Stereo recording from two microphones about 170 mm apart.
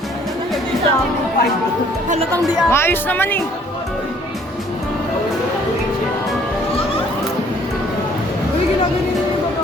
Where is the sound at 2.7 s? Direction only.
15° left (ahead or behind).